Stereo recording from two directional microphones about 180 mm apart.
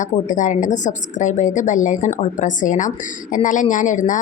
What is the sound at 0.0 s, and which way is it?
A woman's voice, 45° left (ahead or behind).